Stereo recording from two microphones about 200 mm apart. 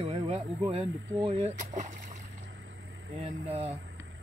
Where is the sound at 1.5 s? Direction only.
40° right (ahead or behind).